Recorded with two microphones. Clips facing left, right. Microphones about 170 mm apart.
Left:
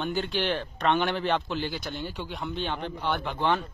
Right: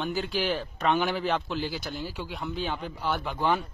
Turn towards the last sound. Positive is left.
turn(degrees=-5)  # may be behind; listen again after turning